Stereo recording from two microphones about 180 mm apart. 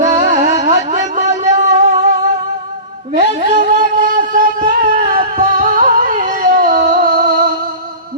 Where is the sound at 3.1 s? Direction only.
50° right (ahead or behind).